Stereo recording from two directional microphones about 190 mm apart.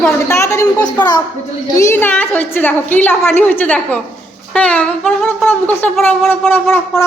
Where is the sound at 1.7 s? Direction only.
15° left (ahead or behind).